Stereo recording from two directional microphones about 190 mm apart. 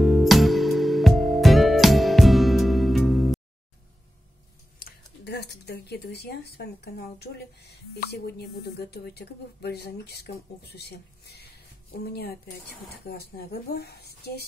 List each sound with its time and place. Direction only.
0.0 s music: centre (ahead or behind)
4.7 s speech: 55° left (ahead or behind)